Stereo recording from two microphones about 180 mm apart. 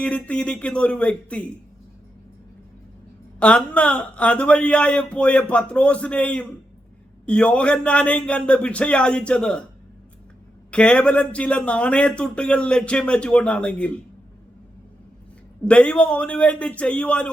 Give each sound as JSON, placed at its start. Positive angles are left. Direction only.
{"t": 0.0, "sound": "speech", "side_deg": 5}
{"t": 3.4, "sound": "speech", "side_deg": 5}
{"t": 10.7, "sound": "speech", "side_deg": 5}
{"t": 15.6, "sound": "speech", "side_deg": 5}